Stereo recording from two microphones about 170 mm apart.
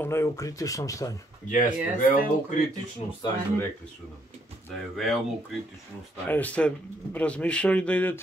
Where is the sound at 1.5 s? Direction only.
55° left (ahead or behind).